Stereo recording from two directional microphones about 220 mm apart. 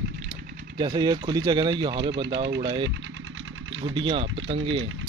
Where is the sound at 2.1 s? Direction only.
50° right (ahead or behind).